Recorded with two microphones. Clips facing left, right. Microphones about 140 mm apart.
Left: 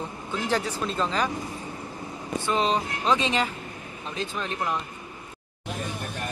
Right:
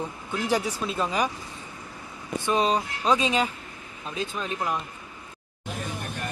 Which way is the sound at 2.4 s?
15° right (ahead or behind).